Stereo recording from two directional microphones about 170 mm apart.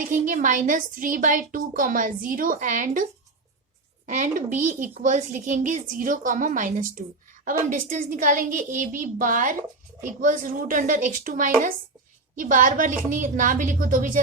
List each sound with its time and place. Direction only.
0.1 s a woman's voice: 50° right (ahead or behind)